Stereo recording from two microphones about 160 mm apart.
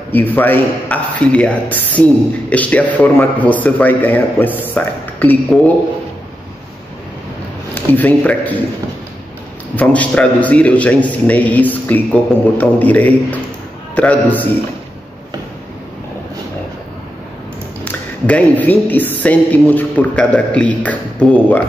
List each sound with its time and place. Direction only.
0.1 s speech: 10° left (ahead or behind)
7.7 s speech: 10° left (ahead or behind)
9.8 s speech: 10° left (ahead or behind)
17.8 s speech: 10° left (ahead or behind)